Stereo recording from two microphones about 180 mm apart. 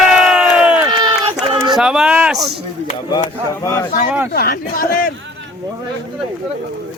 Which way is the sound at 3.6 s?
15° left (ahead or behind).